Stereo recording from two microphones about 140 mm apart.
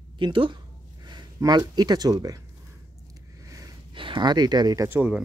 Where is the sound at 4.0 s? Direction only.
35° right (ahead or behind).